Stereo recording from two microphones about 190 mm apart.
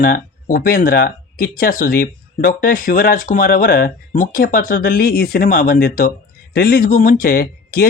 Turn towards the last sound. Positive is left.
turn(degrees=50)  # may be behind; listen again after turning